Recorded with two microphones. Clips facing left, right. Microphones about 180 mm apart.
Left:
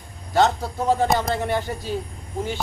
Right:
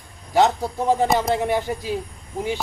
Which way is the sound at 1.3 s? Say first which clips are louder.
Right 3 dB; 15° right (ahead or behind).